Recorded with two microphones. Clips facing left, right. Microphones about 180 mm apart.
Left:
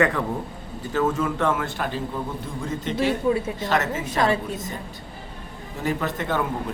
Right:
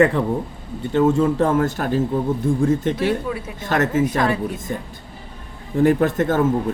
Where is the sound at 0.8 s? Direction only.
25° right (ahead or behind); by 2.0 s 45° right (ahead or behind).